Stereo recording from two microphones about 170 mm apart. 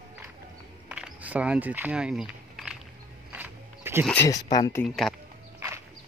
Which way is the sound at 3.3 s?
10° right (ahead or behind).